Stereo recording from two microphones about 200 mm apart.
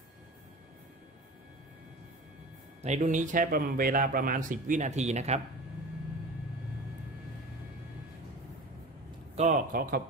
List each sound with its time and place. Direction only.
2.8 s a man's voice: 35° right (ahead or behind)
9.3 s a man's voice: 35° right (ahead or behind)